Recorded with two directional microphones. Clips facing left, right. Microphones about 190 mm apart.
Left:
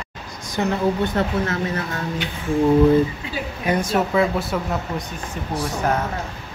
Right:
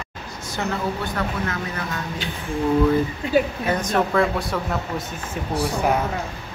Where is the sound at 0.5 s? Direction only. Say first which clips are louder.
Left 5 dB; 25° left (ahead or behind).